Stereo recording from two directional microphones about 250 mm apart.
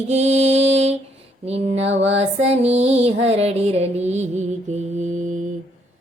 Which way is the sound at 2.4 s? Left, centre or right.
Right.